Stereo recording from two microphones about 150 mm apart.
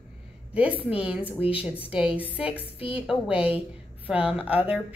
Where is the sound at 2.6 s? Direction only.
40° left (ahead or behind).